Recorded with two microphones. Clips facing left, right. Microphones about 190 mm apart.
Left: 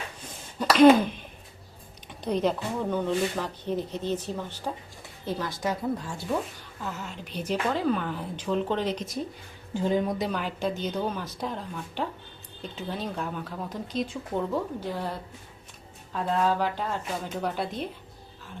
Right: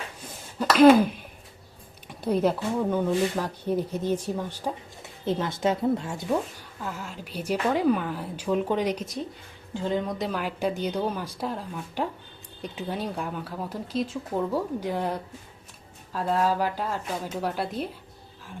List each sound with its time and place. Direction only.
0.6 s speech: 5° right (ahead or behind)
2.2 s speech: 10° right (ahead or behind)
6.8 s speech: 5° right (ahead or behind)
9.7 s speech: 10° left (ahead or behind); by 15.2 s 20° right (ahead or behind)
16.1 s speech: 5° right (ahead or behind)